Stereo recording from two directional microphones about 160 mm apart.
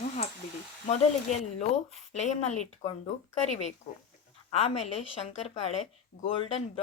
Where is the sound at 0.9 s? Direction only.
40° left (ahead or behind).